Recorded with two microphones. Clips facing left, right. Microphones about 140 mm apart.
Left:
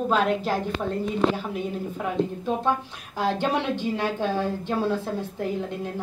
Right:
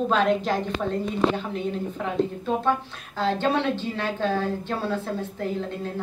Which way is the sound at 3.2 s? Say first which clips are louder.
Right 1 dB; 15° left (ahead or behind).